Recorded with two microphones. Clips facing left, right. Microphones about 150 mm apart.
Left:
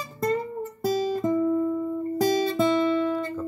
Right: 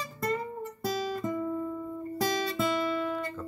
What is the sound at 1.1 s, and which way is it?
Guitar, 30° left (ahead or behind).